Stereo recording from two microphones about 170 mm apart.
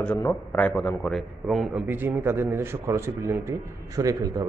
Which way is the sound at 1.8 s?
10° right (ahead or behind).